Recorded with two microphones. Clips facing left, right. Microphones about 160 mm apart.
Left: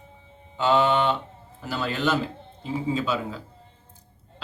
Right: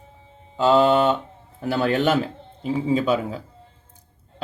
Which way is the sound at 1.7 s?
55° right (ahead or behind).